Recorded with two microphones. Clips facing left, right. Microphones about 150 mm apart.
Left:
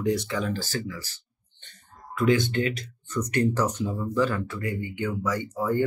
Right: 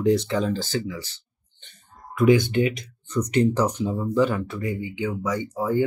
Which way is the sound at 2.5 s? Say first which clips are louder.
Right 4 dB; 20° right (ahead or behind).